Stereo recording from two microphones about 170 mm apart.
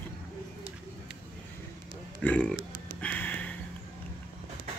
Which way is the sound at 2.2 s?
10° left (ahead or behind).